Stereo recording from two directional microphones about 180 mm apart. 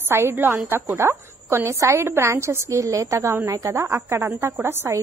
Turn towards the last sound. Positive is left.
turn(degrees=-15)  # may be behind; listen again after turning